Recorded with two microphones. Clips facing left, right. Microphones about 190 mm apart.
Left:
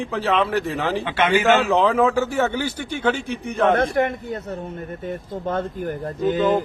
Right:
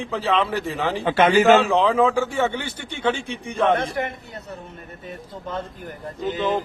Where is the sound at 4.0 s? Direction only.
45° left (ahead or behind).